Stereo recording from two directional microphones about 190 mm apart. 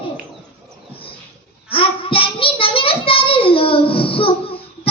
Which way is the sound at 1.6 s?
30° left (ahead or behind).